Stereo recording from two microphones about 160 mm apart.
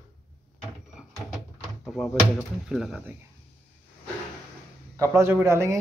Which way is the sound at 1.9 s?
Centre (ahead or behind).